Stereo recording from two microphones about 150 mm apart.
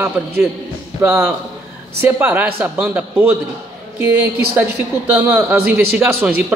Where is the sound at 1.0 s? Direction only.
20° right (ahead or behind).